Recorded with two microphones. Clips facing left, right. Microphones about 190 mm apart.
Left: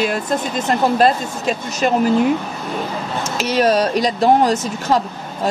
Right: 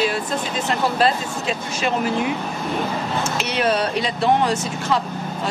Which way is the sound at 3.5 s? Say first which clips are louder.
Left 6 dB; 40° left (ahead or behind).